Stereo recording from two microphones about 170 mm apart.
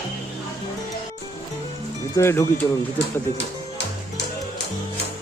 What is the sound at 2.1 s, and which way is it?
Speech, 15° left (ahead or behind).